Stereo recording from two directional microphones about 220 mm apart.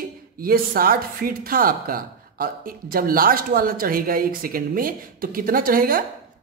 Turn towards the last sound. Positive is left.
turn(degrees=-40)  # may be behind; listen again after turning